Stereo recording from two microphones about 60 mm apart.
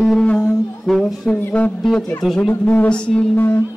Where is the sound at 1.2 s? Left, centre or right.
Left.